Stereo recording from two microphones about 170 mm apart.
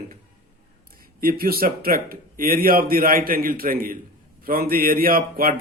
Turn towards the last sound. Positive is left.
turn(degrees=-60)  # may be behind; listen again after turning